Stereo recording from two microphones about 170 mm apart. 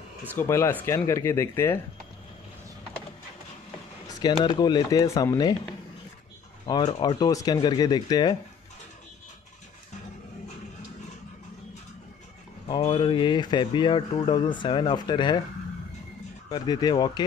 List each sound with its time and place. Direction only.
0.2 s speech: 10° left (ahead or behind)
4.1 s speech: 25° left (ahead or behind)
6.6 s speech: 25° left (ahead or behind)
12.6 s speech: 25° left (ahead or behind)
16.4 s speech: 25° left (ahead or behind)